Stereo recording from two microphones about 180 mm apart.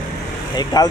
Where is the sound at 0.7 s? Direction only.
20° left (ahead or behind).